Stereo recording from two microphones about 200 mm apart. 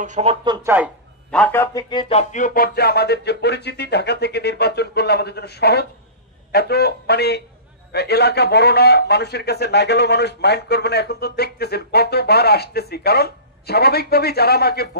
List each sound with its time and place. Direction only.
0.0 s speech: 35° right (ahead or behind)
1.3 s music: 10° left (ahead or behind); by 5.9 s 55° left (ahead or behind)
6.5 s a man's voice: 55° left (ahead or behind)